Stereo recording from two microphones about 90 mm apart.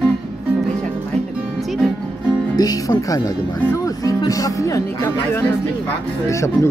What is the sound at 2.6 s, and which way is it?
Speech, 45° left (ahead or behind).